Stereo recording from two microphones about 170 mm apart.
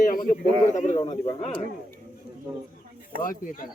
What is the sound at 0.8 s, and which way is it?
Speech, 45° left (ahead or behind).